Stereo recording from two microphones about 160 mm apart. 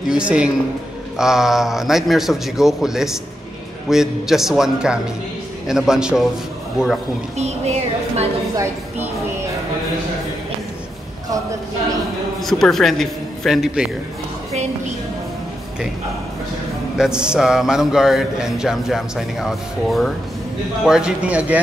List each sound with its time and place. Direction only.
0.1 s speech: 5° right (ahead or behind)
7.3 s speech: 45° right (ahead or behind)
8.5 s speech: 15° right (ahead or behind)
12.4 s a man's voice: centre (ahead or behind)
16.9 s speech: 5° right (ahead or behind)